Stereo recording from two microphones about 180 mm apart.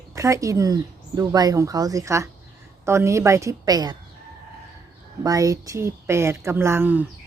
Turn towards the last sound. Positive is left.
turn(degrees=-10)  # may be behind; listen again after turning